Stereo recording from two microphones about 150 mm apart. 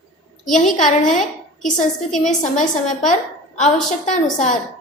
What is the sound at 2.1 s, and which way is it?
Speech, 5° left (ahead or behind).